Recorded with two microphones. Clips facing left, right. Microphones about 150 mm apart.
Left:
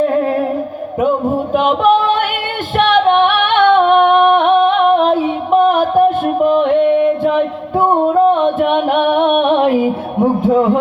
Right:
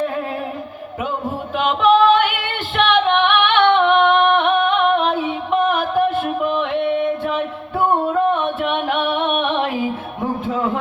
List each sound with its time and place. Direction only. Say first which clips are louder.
0.1 s music: left 10 dB; 45° left (ahead or behind)
1.5 s music: left 4 dB; 45° left (ahead or behind)
2.7 s female singing: left 5 dB; 45° left (ahead or behind)
7.3 s music: left 8 dB; 40° left (ahead or behind)